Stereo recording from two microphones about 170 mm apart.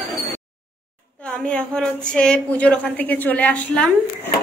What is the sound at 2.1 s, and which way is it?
A woman's voice, 5° left (ahead or behind).